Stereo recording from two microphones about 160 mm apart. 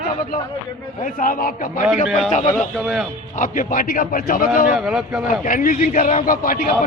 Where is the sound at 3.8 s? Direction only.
65° left (ahead or behind).